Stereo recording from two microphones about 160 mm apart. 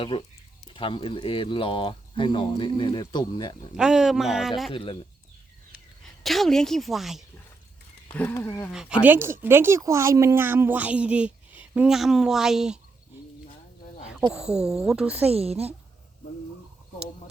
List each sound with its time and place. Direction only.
0.0 s speech: 35° left (ahead or behind)
3.8 s a woman's voice: 5° right (ahead or behind)
4.7 s speech: 35° left (ahead or behind)
6.2 s a woman's voice: centre (ahead or behind)
8.1 s speech: 10° left (ahead or behind)
8.7 s speech: 5° right (ahead or behind)
14.3 s a woman's voice: 5° right (ahead or behind)
15.3 s speech: 40° right (ahead or behind)